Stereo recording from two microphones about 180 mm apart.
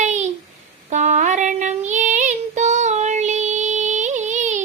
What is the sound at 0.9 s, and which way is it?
Child singing, 40° right (ahead or behind).